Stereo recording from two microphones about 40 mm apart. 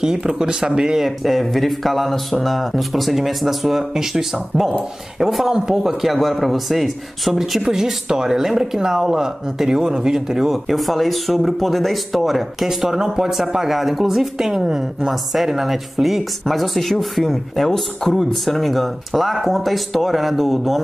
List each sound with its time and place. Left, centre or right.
0.0 s speech: centre
1.0 s speech: centre
7.6 s speech: centre
12.6 s speech: centre